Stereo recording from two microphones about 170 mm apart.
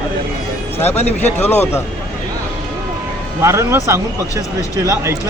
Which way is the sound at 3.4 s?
15° right (ahead or behind).